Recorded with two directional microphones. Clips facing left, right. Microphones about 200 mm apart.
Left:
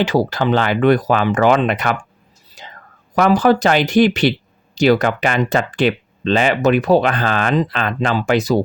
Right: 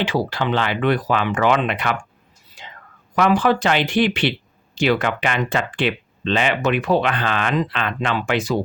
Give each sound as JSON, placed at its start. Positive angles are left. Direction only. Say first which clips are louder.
{"t": 0.0, "sound": "speech", "louder": "left 5 dB", "side_deg": 40}
{"t": 2.6, "sound": "whispering", "louder": "left 2 dB", "side_deg": 40}
{"t": 3.2, "sound": "speech", "louder": "left 4 dB", "side_deg": 40}